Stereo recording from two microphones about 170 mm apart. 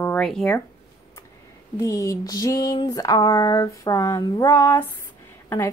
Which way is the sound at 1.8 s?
20° left (ahead or behind).